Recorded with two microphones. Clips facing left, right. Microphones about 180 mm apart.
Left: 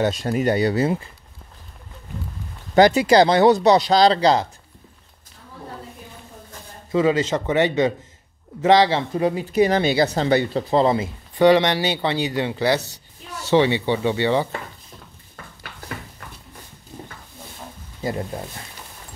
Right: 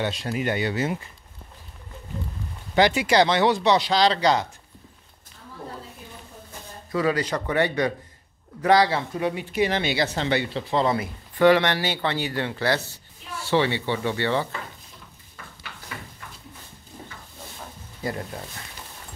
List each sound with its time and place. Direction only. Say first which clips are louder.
0.0 s speech: left 6 dB; 45° left (ahead or behind)
2.7 s speech: left 6 dB; 40° left (ahead or behind)
6.9 s speech: left 5 dB; 25° left (ahead or behind)